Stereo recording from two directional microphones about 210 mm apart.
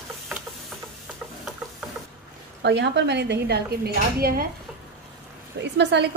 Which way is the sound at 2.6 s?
55° right (ahead or behind).